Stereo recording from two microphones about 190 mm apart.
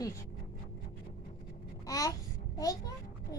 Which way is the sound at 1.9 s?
20° left (ahead or behind).